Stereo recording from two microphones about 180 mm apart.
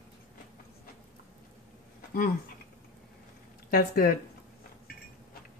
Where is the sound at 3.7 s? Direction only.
60° left (ahead or behind).